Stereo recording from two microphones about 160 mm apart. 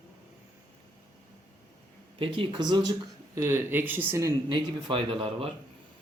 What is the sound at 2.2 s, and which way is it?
Speech, 35° right (ahead or behind).